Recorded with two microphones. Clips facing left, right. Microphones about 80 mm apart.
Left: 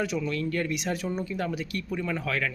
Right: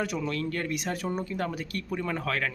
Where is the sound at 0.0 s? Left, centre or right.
Right.